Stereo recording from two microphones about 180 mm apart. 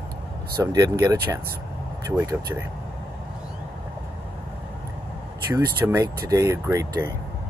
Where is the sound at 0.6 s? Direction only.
20° right (ahead or behind).